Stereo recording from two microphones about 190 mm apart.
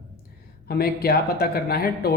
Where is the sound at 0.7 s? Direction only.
55° left (ahead or behind).